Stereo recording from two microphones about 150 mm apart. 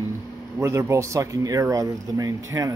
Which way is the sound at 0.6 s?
15° right (ahead or behind).